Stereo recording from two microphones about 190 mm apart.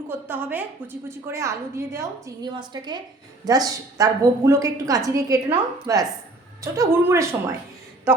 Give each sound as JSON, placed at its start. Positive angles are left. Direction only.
{"t": 0.1, "sound": "a woman's voice", "side_deg": -10}